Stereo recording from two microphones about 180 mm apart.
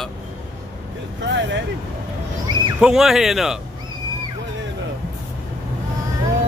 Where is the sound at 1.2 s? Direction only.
80° right.